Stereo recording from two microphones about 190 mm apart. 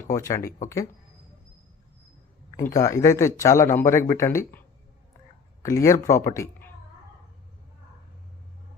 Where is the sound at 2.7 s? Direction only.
15° left (ahead or behind).